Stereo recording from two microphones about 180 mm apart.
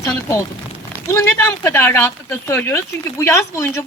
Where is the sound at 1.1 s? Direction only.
15° left (ahead or behind).